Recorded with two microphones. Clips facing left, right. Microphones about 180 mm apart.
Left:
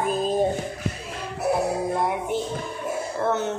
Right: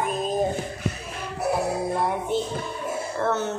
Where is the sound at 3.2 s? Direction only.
15° left (ahead or behind).